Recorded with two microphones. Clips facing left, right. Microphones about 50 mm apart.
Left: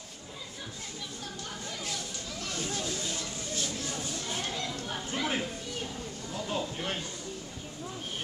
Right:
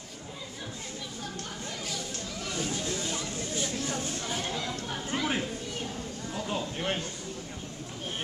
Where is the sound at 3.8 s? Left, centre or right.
Right.